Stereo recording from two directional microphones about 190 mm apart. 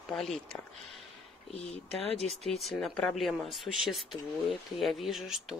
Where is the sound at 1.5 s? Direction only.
35° left (ahead or behind).